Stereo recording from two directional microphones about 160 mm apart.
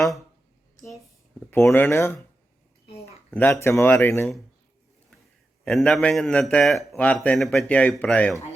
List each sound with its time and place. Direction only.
1.7 s speech: 15° left (ahead or behind)
2.8 s speech: 40° left (ahead or behind)
3.1 s speech: 15° left (ahead or behind)
5.6 s a man's voice: centre (ahead or behind)